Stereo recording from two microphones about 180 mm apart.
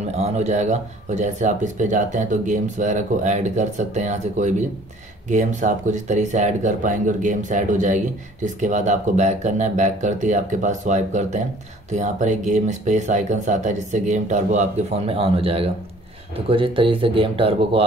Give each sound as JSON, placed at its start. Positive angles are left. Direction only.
{"t": 0.1, "sound": "speech", "side_deg": -35}